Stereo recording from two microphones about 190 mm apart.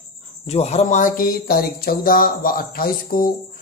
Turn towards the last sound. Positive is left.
turn(degrees=50)  # may be behind; listen again after turning